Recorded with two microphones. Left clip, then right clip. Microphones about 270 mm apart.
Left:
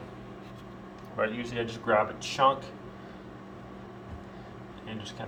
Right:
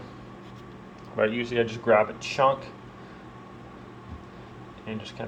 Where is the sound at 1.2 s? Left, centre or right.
Right.